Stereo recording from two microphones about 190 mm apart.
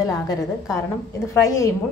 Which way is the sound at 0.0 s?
20° left (ahead or behind).